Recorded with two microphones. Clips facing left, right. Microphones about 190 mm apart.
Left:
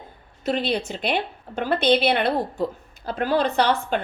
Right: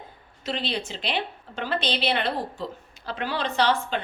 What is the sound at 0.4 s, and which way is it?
A woman's voice, 50° left (ahead or behind).